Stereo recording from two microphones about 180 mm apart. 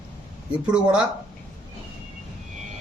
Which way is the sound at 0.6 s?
5° right (ahead or behind).